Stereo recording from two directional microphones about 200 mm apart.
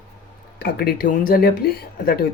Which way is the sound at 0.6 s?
50° left (ahead or behind).